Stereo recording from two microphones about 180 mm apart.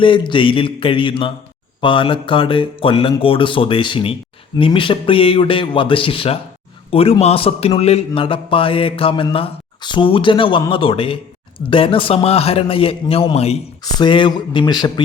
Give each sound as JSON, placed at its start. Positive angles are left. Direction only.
{"t": 0.0, "sound": "a man's voice", "side_deg": 30}